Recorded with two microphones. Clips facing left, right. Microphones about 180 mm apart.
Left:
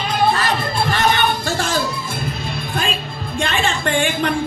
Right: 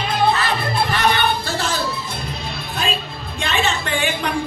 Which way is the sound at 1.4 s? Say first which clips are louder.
Left 3 dB; 50° left (ahead or behind).